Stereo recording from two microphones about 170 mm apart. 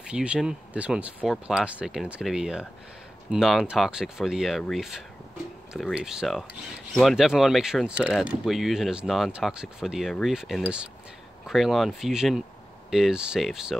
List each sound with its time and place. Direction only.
0.0 s speech: 5° right (ahead or behind)